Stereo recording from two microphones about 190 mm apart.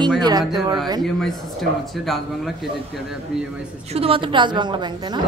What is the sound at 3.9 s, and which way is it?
A woman's voice, 30° right (ahead or behind).